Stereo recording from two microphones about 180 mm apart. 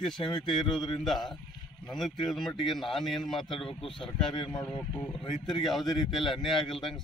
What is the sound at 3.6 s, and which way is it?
Speech, 30° left (ahead or behind).